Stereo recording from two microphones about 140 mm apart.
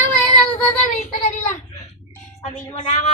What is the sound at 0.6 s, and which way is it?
Child singing, 15° left (ahead or behind).